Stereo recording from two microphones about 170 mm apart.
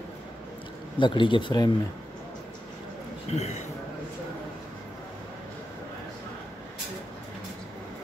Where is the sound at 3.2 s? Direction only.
40° left (ahead or behind).